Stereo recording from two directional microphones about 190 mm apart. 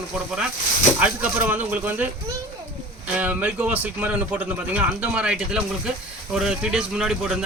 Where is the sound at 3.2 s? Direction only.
10° right (ahead or behind).